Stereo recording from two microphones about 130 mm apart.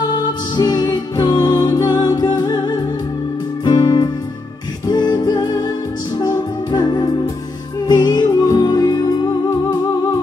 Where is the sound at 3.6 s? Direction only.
35° left (ahead or behind).